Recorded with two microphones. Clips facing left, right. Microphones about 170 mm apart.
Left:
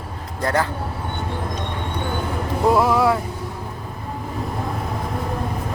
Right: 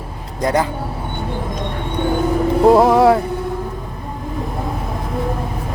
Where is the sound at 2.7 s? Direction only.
40° right (ahead or behind).